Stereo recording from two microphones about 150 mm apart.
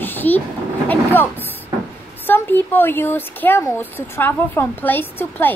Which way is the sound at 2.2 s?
15° left (ahead or behind).